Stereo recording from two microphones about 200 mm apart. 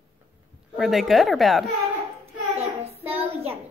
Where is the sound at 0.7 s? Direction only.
Centre (ahead or behind).